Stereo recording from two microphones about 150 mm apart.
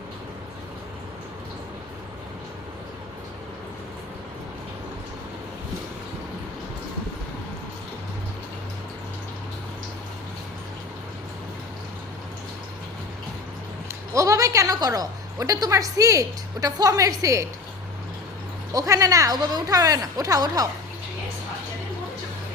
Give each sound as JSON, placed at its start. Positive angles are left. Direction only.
{"t": 14.1, "sound": "a woman's voice", "side_deg": -20}
{"t": 18.7, "sound": "a woman's voice", "side_deg": -20}